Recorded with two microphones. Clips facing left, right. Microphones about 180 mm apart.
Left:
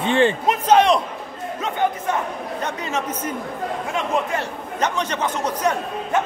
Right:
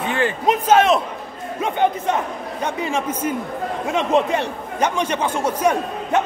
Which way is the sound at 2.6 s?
10° right (ahead or behind).